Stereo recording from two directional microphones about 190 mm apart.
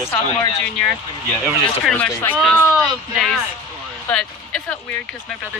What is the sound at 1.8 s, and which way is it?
Speech, 5° left (ahead or behind).